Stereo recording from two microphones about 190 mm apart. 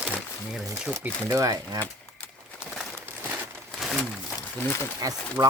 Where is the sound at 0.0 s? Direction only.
5° right (ahead or behind).